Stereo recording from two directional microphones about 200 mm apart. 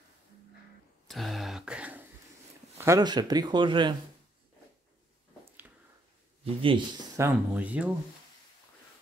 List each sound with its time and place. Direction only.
1.0 s throat clearing: centre (ahead or behind)
2.8 s speech: 15° right (ahead or behind)
6.4 s speech: 25° right (ahead or behind)
7.2 s speech: 10° right (ahead or behind)